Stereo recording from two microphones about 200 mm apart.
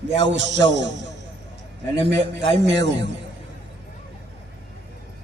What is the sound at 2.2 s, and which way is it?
Speech, 60° right (ahead or behind).